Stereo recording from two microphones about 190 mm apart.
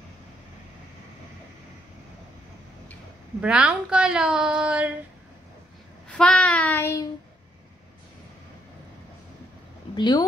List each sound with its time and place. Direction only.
3.3 s a woman's voice: 5° right (ahead or behind)
6.0 s child singing: 5° left (ahead or behind)
9.9 s speech: 25° left (ahead or behind)